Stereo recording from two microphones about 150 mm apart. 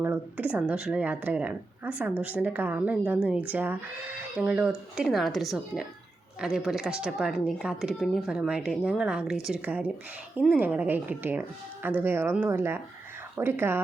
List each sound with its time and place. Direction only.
0.0 s speech: 15° right (ahead or behind)